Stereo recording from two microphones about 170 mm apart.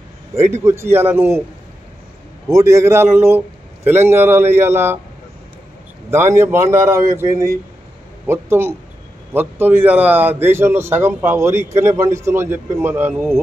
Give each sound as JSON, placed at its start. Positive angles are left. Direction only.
{"t": 0.4, "sound": "a man's voice", "side_deg": -15}
{"t": 2.5, "sound": "a man's voice", "side_deg": -15}
{"t": 6.0, "sound": "a man's voice", "side_deg": -15}